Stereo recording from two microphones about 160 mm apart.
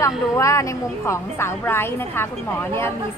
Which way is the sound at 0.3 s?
20° left (ahead or behind).